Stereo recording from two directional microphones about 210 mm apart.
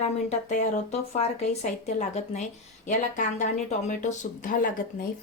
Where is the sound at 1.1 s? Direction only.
30° left (ahead or behind).